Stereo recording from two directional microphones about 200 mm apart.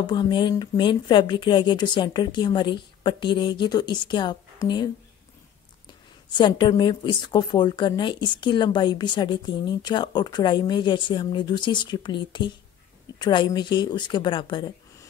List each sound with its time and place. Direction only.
0.0 s a woman's voice: 25° left (ahead or behind)
6.3 s a woman's voice: 25° left (ahead or behind)